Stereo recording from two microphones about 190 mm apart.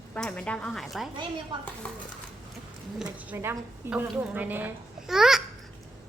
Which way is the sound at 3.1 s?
10° right (ahead or behind).